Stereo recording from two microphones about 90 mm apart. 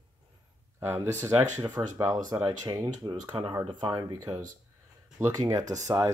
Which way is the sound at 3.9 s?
50° right (ahead or behind).